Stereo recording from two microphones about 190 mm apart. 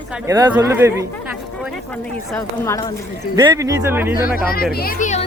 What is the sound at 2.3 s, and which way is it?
Speech, 15° left (ahead or behind).